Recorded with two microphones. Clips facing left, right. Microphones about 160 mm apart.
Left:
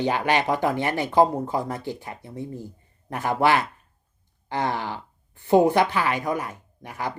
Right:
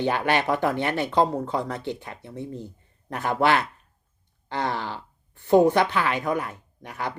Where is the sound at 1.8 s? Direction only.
65° right (ahead or behind).